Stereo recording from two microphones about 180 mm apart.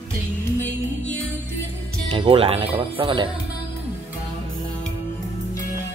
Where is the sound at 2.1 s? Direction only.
30° right (ahead or behind).